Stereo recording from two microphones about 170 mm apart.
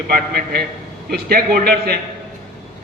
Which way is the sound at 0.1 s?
60° right (ahead or behind).